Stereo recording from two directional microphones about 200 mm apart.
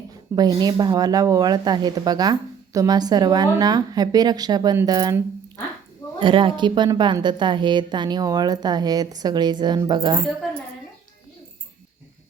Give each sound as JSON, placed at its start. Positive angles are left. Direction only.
{"t": 0.3, "sound": "a woman's voice", "side_deg": -20}